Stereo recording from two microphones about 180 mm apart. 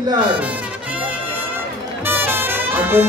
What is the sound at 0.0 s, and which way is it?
Speech, 25° right (ahead or behind).